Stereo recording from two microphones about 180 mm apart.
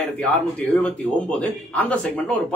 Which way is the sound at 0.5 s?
5° left (ahead or behind).